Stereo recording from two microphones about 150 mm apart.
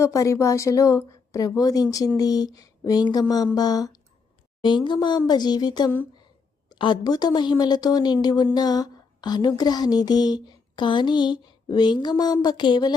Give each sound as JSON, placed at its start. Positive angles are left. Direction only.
{"t": 0.0, "sound": "speech", "side_deg": 20}